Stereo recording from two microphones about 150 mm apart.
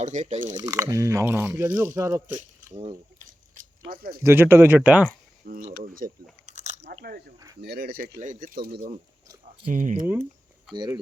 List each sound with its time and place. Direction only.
0.0 s speech: 50° right (ahead or behind)
0.5 s speech: 25° right (ahead or behind)
2.2 s speech: 55° right (ahead or behind)
3.2 s a sound: 65° right (ahead or behind)
4.2 s speech: 15° right (ahead or behind)
5.5 s speech: 70° right (ahead or behind)
6.4 s biting: 50° right (ahead or behind)
7.0 s speech: 90° right
8.2 s speech: 60° right (ahead or behind)
9.7 s speech: 60° right (ahead or behind)